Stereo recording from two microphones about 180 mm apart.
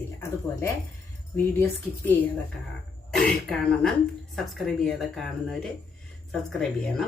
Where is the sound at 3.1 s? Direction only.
Centre (ahead or behind).